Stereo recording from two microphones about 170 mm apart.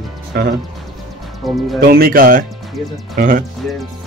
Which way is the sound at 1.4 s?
Centre (ahead or behind).